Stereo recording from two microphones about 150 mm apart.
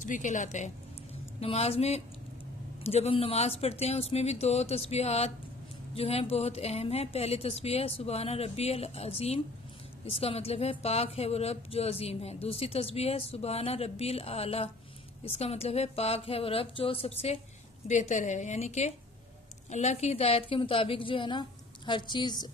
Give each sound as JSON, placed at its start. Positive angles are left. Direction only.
{"t": 0.0, "sound": "a woman's voice", "side_deg": 60}
{"t": 1.4, "sound": "a woman's voice", "side_deg": 40}
{"t": 17.8, "sound": "a woman's voice", "side_deg": 50}